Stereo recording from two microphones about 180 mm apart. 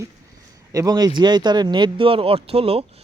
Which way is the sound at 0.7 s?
20° right (ahead or behind).